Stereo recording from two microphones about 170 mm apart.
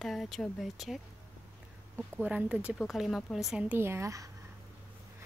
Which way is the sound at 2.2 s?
10° right (ahead or behind).